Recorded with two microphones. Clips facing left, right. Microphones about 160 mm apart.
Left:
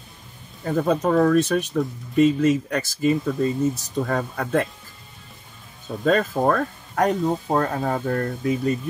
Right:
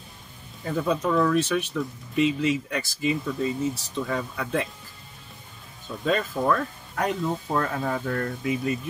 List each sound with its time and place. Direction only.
0.7 s speech: 50° left (ahead or behind)
5.9 s speech: 45° left (ahead or behind)